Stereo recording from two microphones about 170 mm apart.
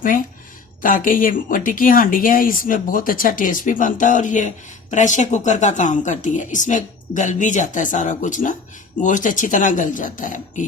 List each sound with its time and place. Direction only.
0.8 s speech: 55° left (ahead or behind)